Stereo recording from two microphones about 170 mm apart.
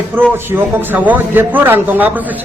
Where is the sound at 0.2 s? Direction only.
10° right (ahead or behind).